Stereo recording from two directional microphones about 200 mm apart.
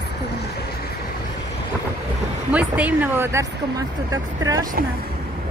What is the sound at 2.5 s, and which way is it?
Speech, 10° right (ahead or behind).